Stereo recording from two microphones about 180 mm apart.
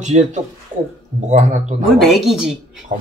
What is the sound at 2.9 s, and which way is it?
Speech, 45° right (ahead or behind).